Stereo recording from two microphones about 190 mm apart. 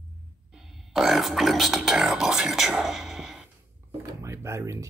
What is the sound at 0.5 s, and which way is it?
Music, centre (ahead or behind).